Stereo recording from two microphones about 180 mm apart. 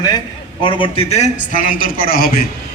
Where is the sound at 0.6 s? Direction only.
25° left (ahead or behind).